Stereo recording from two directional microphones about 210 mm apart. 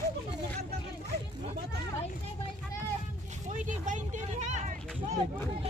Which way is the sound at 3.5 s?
35° right (ahead or behind).